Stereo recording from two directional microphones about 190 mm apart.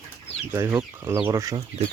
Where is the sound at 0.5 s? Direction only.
15° right (ahead or behind).